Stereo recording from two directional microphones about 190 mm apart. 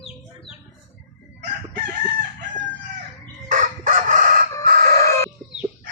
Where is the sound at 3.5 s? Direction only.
45° right (ahead or behind).